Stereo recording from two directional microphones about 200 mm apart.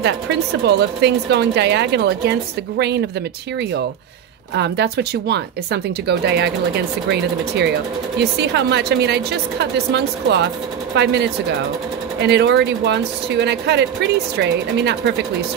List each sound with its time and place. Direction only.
0.0 s speech: 55° right (ahead or behind)
4.6 s speech: 55° right (ahead or behind)